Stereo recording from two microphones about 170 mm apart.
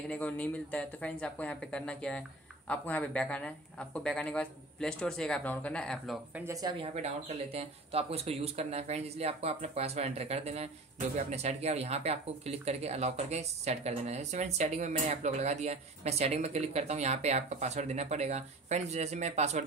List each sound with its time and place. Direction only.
0.1 s speech: 10° left (ahead or behind)
6.3 s speech: 15° right (ahead or behind)
6.8 s speech: 40° right (ahead or behind)